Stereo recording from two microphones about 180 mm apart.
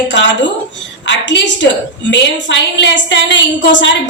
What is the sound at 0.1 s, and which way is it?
A woman's voice, 90° left.